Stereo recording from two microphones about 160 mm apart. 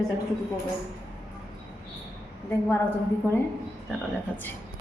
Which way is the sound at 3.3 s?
15° right (ahead or behind).